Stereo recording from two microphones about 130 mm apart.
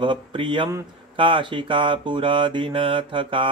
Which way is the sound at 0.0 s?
40° right (ahead or behind).